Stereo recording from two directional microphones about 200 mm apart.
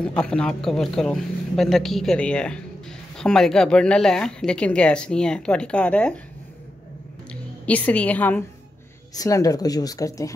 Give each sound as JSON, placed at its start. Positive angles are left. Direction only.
{"t": 0.0, "sound": "speech", "side_deg": 5}
{"t": 7.6, "sound": "speech", "side_deg": 5}